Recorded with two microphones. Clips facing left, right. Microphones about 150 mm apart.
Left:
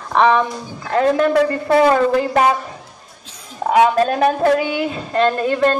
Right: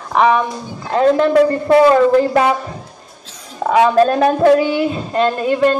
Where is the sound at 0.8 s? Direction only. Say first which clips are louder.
Right 2 dB; 25° right (ahead or behind).